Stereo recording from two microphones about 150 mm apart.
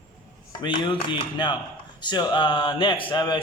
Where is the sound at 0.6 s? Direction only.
30° left (ahead or behind).